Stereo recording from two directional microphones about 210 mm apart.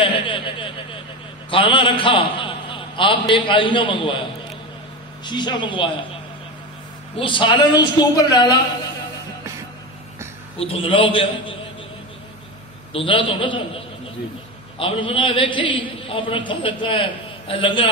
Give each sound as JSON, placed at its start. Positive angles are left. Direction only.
{"t": 0.0, "sound": "a sound", "side_deg": 25}
{"t": 1.5, "sound": "a man's voice", "side_deg": 25}
{"t": 5.2, "sound": "a man's voice", "side_deg": 20}
{"t": 7.2, "sound": "a man's voice", "side_deg": 25}
{"t": 10.6, "sound": "a man's voice", "side_deg": 25}
{"t": 12.9, "sound": "a man's voice", "side_deg": 25}